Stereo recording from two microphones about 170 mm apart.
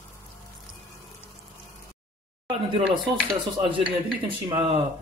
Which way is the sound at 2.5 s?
35° right (ahead or behind).